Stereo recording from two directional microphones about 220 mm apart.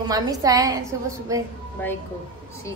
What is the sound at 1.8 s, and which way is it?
Speech, 5° left (ahead or behind).